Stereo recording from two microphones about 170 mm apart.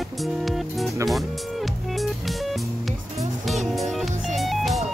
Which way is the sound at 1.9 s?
Centre (ahead or behind).